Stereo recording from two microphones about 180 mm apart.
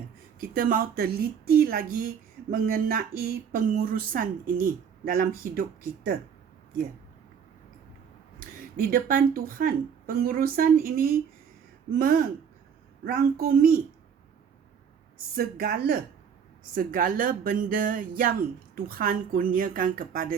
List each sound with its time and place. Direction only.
0.4 s a woman's voice: 50° right (ahead or behind)
8.7 s a woman's voice: 55° right (ahead or behind)
13.1 s a woman's voice: 55° right (ahead or behind)
15.4 s speech: 55° right (ahead or behind)